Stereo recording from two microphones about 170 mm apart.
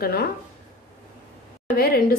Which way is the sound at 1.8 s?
60° left (ahead or behind).